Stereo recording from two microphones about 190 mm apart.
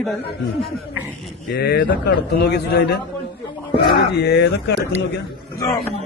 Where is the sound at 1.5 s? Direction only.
60° left (ahead or behind).